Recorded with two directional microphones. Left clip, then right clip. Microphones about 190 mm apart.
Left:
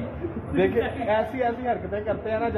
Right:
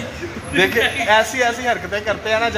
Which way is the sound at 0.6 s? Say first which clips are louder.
Right 8 dB; 20° right (ahead or behind).